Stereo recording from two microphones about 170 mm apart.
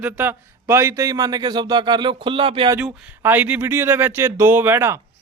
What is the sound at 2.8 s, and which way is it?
A man's voice, 5° right (ahead or behind).